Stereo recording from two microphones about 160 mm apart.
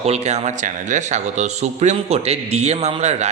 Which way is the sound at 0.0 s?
40° right (ahead or behind).